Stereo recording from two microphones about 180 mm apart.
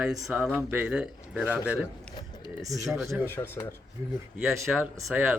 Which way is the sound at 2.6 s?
20° right (ahead or behind).